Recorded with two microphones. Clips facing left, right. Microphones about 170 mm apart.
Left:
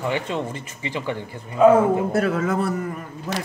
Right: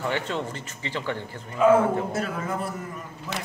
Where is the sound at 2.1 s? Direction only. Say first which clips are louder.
Left 8 dB; 70° left (ahead or behind).